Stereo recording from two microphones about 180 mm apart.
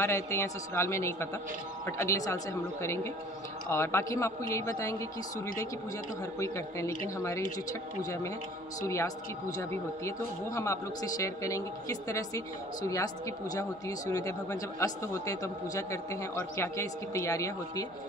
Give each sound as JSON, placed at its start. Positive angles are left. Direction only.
{"t": 0.0, "sound": "a man's voice", "side_deg": 15}
{"t": 6.4, "sound": "a man's voice", "side_deg": 15}
{"t": 8.0, "sound": "a man's voice", "side_deg": 15}